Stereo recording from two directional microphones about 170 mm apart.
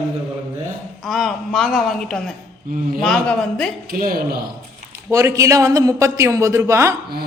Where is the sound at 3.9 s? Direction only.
60° right (ahead or behind).